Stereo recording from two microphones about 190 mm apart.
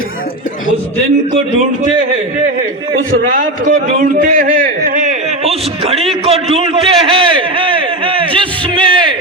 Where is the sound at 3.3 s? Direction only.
45° right (ahead or behind); by 8.4 s 30° right (ahead or behind).